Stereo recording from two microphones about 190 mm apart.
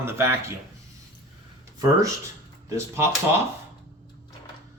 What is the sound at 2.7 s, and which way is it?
Speech, 15° right (ahead or behind).